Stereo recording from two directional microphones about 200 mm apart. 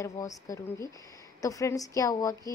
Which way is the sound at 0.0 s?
15° left (ahead or behind).